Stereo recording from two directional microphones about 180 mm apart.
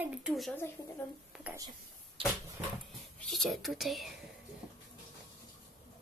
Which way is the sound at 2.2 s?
30° right (ahead or behind).